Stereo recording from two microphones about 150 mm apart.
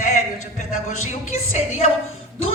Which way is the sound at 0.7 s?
55° left (ahead or behind).